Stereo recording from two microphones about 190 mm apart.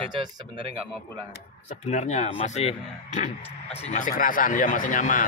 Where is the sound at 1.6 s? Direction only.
40° left (ahead or behind).